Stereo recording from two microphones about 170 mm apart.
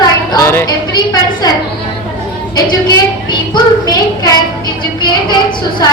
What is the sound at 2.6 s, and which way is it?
A woman's voice, 25° left (ahead or behind).